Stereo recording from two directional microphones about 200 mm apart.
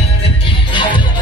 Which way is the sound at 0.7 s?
25° left (ahead or behind).